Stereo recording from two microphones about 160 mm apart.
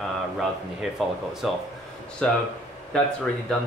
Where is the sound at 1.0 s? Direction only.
Centre (ahead or behind).